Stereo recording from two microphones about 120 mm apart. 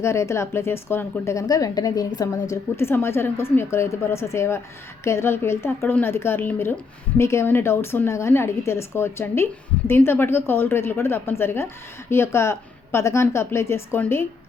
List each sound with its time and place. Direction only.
0.0 s a woman's voice: 25° left (ahead or behind)
2.5 s a woman's voice: 20° left (ahead or behind)